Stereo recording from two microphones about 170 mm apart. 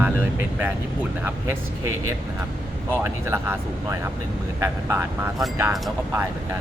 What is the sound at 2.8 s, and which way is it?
Speech, 15° right (ahead or behind).